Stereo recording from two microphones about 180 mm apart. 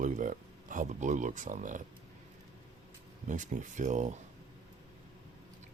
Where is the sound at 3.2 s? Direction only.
45° right (ahead or behind).